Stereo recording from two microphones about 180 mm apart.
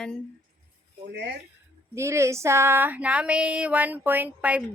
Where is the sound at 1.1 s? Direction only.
70° right (ahead or behind).